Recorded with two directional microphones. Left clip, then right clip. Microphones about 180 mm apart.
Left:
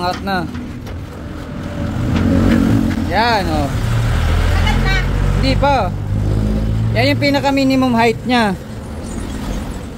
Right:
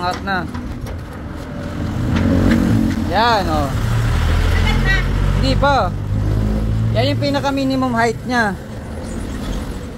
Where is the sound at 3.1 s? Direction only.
15° left (ahead or behind).